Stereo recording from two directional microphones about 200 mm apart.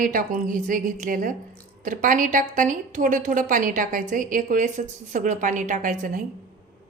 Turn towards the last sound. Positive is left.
turn(degrees=-40)  # may be behind; listen again after turning